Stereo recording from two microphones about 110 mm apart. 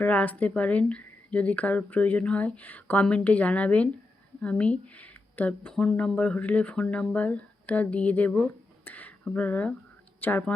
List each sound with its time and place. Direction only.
0.0 s speech: 15° left (ahead or behind)